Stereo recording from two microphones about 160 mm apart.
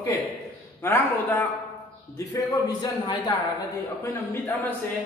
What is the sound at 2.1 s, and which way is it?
A man's voice, 25° left (ahead or behind).